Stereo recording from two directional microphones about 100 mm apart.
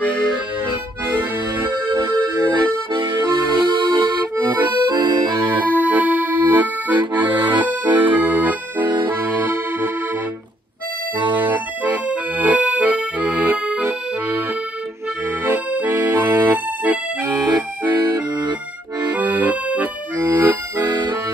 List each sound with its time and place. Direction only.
1.7 s accordion: 40° right (ahead or behind)
5.5 s accordion: 15° right (ahead or behind)
11.2 s accordion: 15° right (ahead or behind)
15.4 s music: 20° right (ahead or behind)
17.5 s music: 40° right (ahead or behind)
19.1 s accordion: 15° right (ahead or behind)
20.9 s accordion: 45° right (ahead or behind)